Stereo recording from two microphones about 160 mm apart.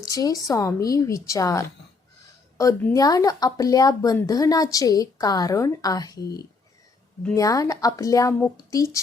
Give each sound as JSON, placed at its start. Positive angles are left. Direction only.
{"t": 0.0, "sound": "speech", "side_deg": 25}
{"t": 7.3, "sound": "speech", "side_deg": 20}